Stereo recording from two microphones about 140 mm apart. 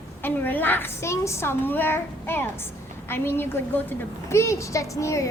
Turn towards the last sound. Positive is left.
turn(degrees=20)  # may be behind; listen again after turning